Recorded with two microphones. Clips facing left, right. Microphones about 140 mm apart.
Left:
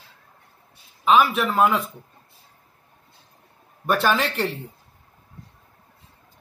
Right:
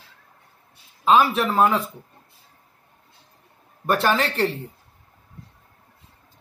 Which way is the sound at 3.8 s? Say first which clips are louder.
Even; 20° right (ahead or behind).